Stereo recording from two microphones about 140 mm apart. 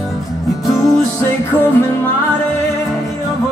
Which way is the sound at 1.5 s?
15° left (ahead or behind).